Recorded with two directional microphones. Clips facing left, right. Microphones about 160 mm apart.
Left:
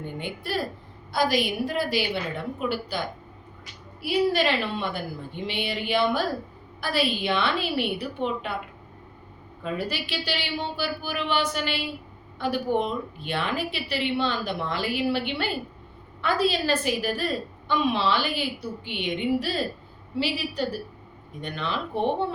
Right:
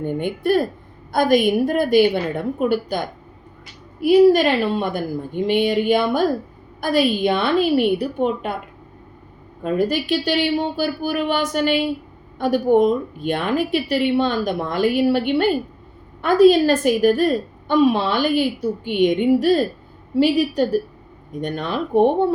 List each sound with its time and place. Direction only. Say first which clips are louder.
0.0 s a woman's voice: right 12 dB; 50° right (ahead or behind)
9.6 s a woman's voice: right 10 dB; 45° right (ahead or behind)